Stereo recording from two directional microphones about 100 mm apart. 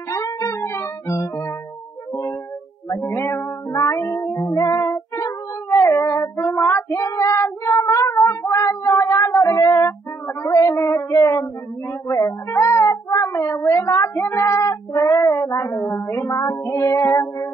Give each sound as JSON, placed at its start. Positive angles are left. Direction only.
{"t": 0.1, "sound": "music", "side_deg": 30}
{"t": 3.2, "sound": "music", "side_deg": 30}
{"t": 10.2, "sound": "child singing", "side_deg": 30}
{"t": 12.1, "sound": "cat", "side_deg": 30}
{"t": 14.1, "sound": "female singing", "side_deg": 25}
{"t": 16.1, "sound": "music", "side_deg": 30}